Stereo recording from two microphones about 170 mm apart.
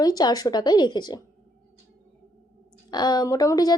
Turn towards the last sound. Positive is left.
turn(degrees=20)  # may be behind; listen again after turning